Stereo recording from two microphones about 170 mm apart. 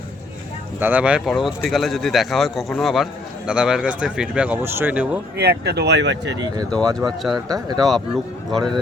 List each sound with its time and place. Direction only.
0.8 s speech: 10° right (ahead or behind)
5.4 s speech: 75° right (ahead or behind); by 6.3 s 90° right
7.3 s speech: 25° right (ahead or behind)
7.9 s speech: centre (ahead or behind)